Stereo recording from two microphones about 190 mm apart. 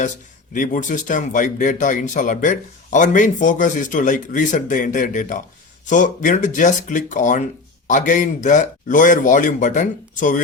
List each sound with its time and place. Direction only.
0.5 s speech: 45° left (ahead or behind)